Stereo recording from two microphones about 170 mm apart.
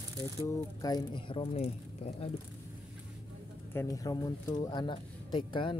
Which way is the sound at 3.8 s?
20° left (ahead or behind).